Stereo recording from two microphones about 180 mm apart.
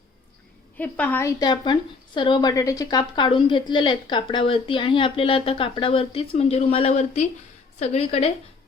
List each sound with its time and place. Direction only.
0.8 s a woman's voice: 10° left (ahead or behind)
1.4 s a woman's voice: 25° left (ahead or behind)